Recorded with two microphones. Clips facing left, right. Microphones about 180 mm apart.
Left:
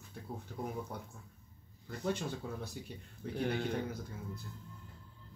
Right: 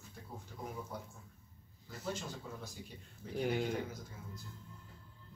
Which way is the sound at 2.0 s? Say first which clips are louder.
Left 6 dB; 60° left (ahead or behind).